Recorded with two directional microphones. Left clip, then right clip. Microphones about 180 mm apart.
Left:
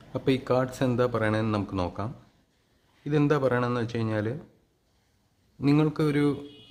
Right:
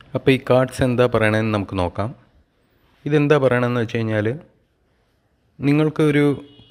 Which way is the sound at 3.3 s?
20° right (ahead or behind).